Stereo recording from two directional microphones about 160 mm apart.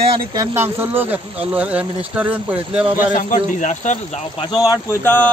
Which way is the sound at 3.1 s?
55° left (ahead or behind).